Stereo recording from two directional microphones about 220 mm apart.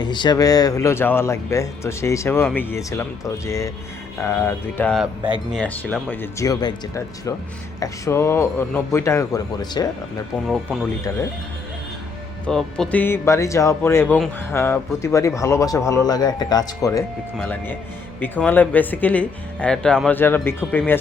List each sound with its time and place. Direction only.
0.0 s speech: 20° left (ahead or behind)
12.5 s speech: centre (ahead or behind)